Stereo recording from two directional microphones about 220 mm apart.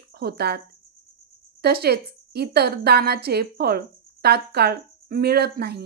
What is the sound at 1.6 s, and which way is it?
A woman's voice, 45° right (ahead or behind).